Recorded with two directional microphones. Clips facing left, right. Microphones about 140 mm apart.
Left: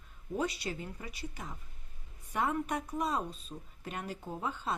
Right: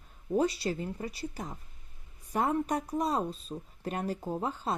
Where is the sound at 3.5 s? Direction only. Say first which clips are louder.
Right 6 dB; 25° right (ahead or behind).